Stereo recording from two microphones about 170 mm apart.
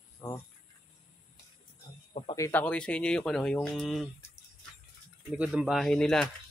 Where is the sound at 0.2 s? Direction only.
20° left (ahead or behind).